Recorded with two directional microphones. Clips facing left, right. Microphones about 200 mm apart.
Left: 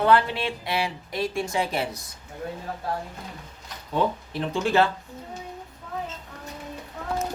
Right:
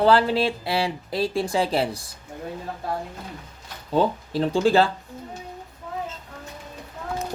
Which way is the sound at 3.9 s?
30° right (ahead or behind).